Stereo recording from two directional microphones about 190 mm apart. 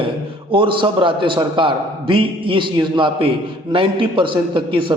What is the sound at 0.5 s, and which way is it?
A man's voice, 25° right (ahead or behind).